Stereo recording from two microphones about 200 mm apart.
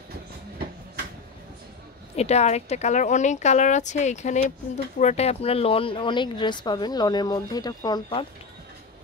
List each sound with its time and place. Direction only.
2.1 s speech: 35° left (ahead or behind)